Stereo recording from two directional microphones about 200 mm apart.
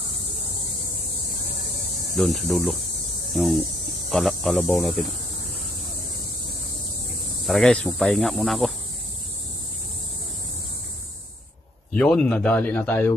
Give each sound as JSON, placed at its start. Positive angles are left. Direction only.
{"t": 2.1, "sound": "speech", "side_deg": 0}
{"t": 7.4, "sound": "speech", "side_deg": 0}
{"t": 11.9, "sound": "speech", "side_deg": 5}